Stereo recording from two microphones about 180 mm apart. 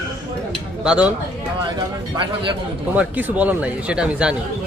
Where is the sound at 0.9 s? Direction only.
5° right (ahead or behind).